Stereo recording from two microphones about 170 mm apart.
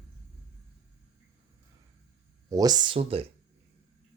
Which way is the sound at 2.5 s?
20° right (ahead or behind).